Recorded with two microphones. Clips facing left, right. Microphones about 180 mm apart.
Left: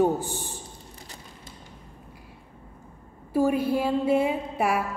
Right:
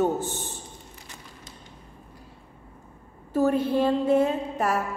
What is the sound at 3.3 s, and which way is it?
A woman's voice, 10° left (ahead or behind).